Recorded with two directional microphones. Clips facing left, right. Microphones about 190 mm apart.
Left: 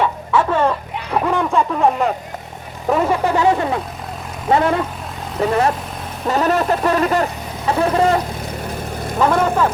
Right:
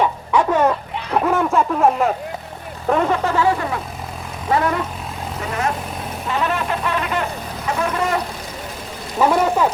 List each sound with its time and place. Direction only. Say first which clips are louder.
0.0 s bow-wow: even; 10° right (ahead or behind)
1.1 s speech: even; centre (ahead or behind)
2.8 s a sound: left 1 dB; 5° left (ahead or behind); by 3.8 s 25° left (ahead or behind)
4.4 s speech: left 3 dB; 25° left (ahead or behind)
9.1 s speech: even; 10° right (ahead or behind)